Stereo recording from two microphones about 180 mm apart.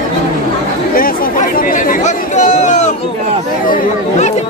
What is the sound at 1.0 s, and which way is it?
Chatter, 55° left (ahead or behind).